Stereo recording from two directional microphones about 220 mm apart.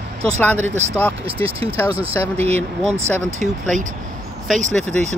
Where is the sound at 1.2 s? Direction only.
25° right (ahead or behind).